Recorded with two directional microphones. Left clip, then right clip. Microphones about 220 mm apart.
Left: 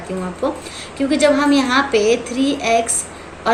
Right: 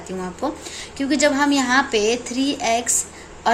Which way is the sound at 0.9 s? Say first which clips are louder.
Left 3 dB; 40° right (ahead or behind).